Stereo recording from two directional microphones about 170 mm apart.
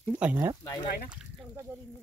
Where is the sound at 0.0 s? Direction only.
10° right (ahead or behind).